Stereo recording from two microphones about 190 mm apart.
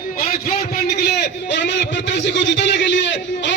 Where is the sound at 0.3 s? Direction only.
55° left (ahead or behind).